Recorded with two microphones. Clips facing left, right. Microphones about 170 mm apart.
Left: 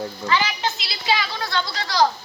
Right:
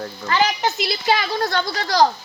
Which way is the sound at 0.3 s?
50° right (ahead or behind).